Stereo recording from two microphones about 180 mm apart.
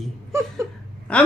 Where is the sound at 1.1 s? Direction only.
5° left (ahead or behind).